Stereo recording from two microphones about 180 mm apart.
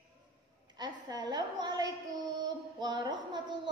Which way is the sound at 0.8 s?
25° right (ahead or behind).